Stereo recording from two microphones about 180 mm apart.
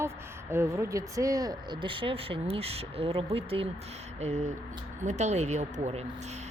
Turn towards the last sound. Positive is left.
turn(degrees=-35)  # may be behind; listen again after turning